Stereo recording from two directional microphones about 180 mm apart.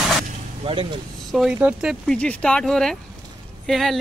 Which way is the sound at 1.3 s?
Centre (ahead or behind).